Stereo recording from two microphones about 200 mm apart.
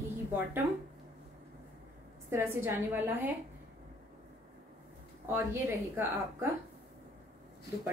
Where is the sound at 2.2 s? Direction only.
10° right (ahead or behind).